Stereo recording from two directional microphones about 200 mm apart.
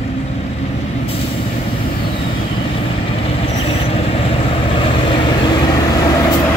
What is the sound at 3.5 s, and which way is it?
Vehicle, 30° left (ahead or behind).